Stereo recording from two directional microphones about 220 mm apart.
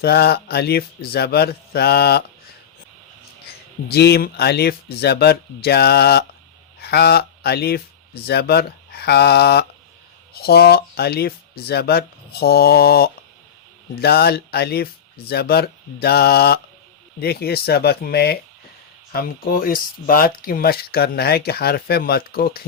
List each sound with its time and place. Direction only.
0.0 s speech: 45° left (ahead or behind)
3.8 s speech: 45° left (ahead or behind)